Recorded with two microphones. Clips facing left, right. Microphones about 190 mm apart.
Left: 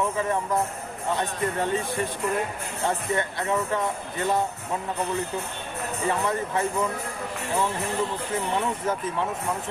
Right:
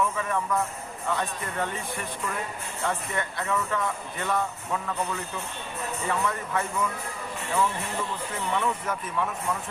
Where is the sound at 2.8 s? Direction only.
25° left (ahead or behind).